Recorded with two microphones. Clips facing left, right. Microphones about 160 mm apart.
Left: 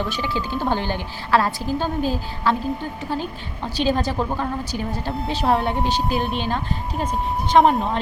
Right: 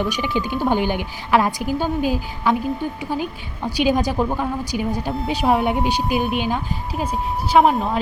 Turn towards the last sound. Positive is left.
turn(degrees=0)  # may be behind; listen again after turning